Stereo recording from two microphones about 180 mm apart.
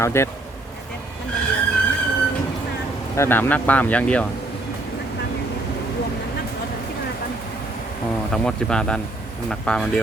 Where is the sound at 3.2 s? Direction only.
10° left (ahead or behind).